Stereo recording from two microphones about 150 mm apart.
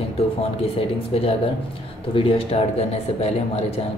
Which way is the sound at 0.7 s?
40° left (ahead or behind).